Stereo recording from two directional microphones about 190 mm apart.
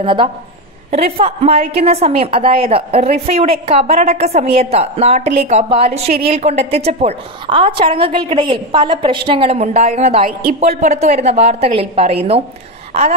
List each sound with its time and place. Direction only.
0.0 s a woman's voice: 25° right (ahead or behind)